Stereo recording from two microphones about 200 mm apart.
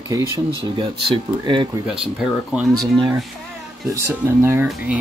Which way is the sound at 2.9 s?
25° right (ahead or behind).